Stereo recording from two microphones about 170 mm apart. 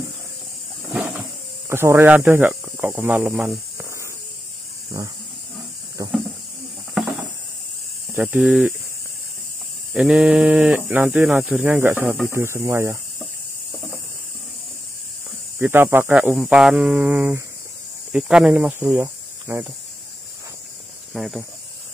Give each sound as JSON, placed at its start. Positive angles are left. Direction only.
{"t": 1.7, "sound": "speech", "side_deg": -15}
{"t": 6.0, "sound": "a sound", "side_deg": -25}
{"t": 8.2, "sound": "speech", "side_deg": -5}
{"t": 9.9, "sound": "speech", "side_deg": -5}
{"t": 15.6, "sound": "speech", "side_deg": -15}
{"t": 21.1, "sound": "speech", "side_deg": 0}